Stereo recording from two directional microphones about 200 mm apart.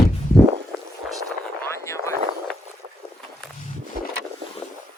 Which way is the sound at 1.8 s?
15° left (ahead or behind).